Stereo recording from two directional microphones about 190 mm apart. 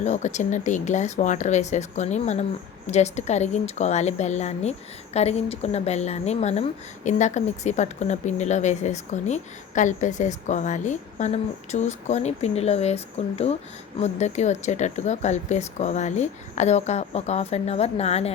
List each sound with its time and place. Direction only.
0.0 s a woman's voice: 40° left (ahead or behind)